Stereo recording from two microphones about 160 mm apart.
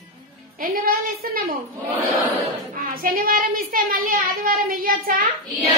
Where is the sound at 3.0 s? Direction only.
65° right (ahead or behind).